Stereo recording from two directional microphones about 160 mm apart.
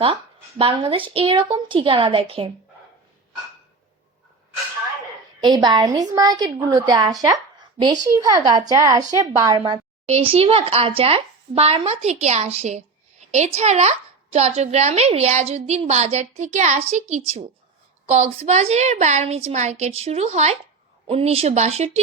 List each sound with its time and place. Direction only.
0.6 s speech: 35° right (ahead or behind)
5.4 s a woman's voice: 25° right (ahead or behind)
10.1 s a woman's voice: 40° right (ahead or behind)